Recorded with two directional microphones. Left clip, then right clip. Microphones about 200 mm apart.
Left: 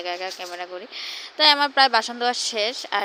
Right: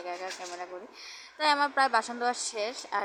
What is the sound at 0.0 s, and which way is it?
Speech, 25° left (ahead or behind).